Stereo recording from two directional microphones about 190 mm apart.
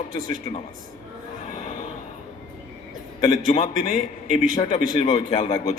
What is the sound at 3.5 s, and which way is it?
Speech, 35° left (ahead or behind).